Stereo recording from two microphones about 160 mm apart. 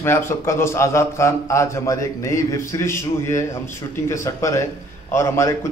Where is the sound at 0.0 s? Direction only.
15° left (ahead or behind).